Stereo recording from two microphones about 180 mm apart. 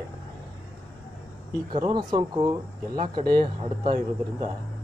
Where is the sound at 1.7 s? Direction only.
25° right (ahead or behind).